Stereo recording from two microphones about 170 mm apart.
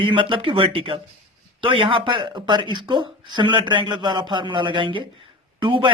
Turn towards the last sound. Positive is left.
turn(degrees=-30)  # may be behind; listen again after turning